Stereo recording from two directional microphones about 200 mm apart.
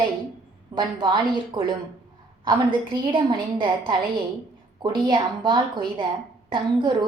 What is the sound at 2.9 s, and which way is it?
A woman's voice, 20° right (ahead or behind).